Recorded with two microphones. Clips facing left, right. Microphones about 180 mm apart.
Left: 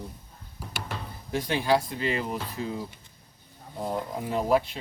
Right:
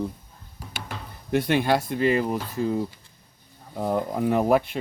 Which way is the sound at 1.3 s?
60° right (ahead or behind).